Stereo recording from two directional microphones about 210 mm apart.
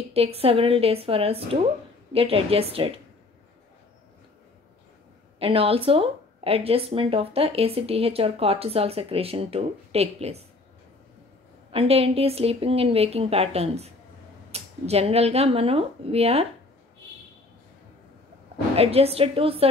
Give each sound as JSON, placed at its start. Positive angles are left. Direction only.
{"t": 0.1, "sound": "speech", "side_deg": -30}
{"t": 5.4, "sound": "speech", "side_deg": -25}
{"t": 11.7, "sound": "speech", "side_deg": -30}
{"t": 18.8, "sound": "speech", "side_deg": -30}